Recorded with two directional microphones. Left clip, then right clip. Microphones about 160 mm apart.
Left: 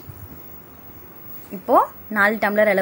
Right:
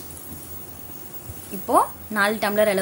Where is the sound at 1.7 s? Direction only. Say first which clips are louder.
Left 3 dB; 25° left (ahead or behind).